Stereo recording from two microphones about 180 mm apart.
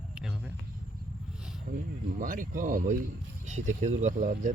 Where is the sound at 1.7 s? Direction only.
40° right (ahead or behind).